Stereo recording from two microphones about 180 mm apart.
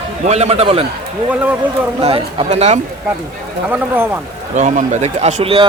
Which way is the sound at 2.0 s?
35° right (ahead or behind).